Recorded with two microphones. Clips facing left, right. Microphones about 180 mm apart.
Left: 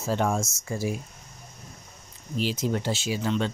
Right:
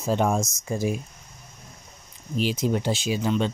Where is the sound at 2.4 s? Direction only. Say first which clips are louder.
Right 3 dB; 15° right (ahead or behind).